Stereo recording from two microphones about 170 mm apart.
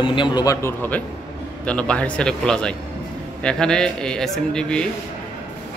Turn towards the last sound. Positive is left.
turn(degrees=5)  # may be behind; listen again after turning